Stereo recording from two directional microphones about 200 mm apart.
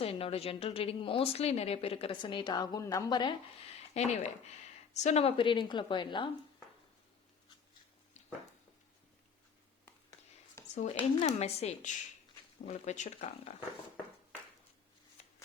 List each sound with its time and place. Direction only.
0.0 s a woman's voice: 30° left (ahead or behind)
10.8 s speech: 35° left (ahead or behind)